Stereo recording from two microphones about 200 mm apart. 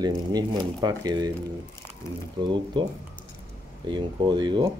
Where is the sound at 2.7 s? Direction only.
20° right (ahead or behind).